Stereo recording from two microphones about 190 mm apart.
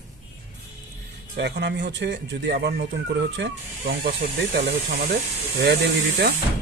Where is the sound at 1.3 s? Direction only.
65° right (ahead or behind).